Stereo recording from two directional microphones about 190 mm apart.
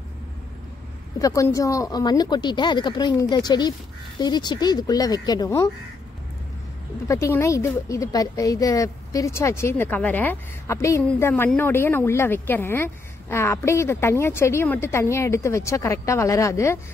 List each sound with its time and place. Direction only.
1.2 s speech: 15° left (ahead or behind)
7.1 s a woman's voice: 15° left (ahead or behind)